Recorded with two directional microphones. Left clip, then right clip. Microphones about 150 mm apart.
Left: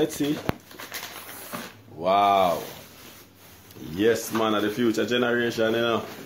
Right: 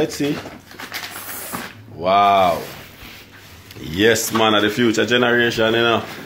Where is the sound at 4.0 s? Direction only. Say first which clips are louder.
Right 7 dB; 15° left (ahead or behind).